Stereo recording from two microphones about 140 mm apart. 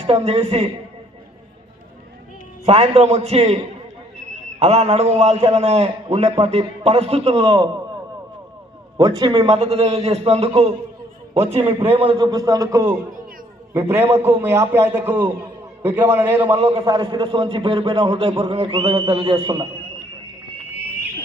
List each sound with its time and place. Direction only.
0.0 s a man's voice: 45° right (ahead or behind)
2.6 s a man's voice: 45° right (ahead or behind)
7.4 s a man's voice: 35° right (ahead or behind)
8.9 s a man's voice: 30° right (ahead or behind)
9.5 s a man's voice: 50° right (ahead or behind); by 16.5 s 15° right (ahead or behind)
16.5 s a man's voice: 45° right (ahead or behind)
16.8 s a man's voice: 30° right (ahead or behind)